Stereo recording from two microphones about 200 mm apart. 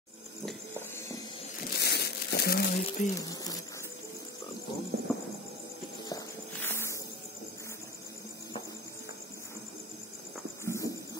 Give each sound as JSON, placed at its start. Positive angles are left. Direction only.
{"t": 0.5, "sound": "a sound", "side_deg": 10}
{"t": 1.7, "sound": "crumpling", "side_deg": 55}
{"t": 3.2, "sound": "speech", "side_deg": 20}
{"t": 5.1, "sound": "music", "side_deg": 0}
{"t": 6.0, "sound": "music", "side_deg": 15}
{"t": 10.6, "sound": "a sound", "side_deg": 15}